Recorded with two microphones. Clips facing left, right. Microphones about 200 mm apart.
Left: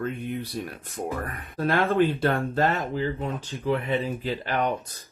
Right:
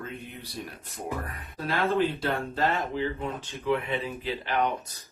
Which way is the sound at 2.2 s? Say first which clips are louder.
Left 4 dB; 50° left (ahead or behind).